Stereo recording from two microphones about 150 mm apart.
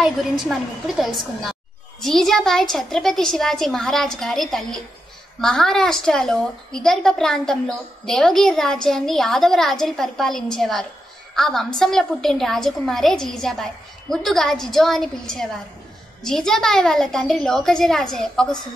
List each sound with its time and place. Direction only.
0.0 s a woman's voice: centre (ahead or behind)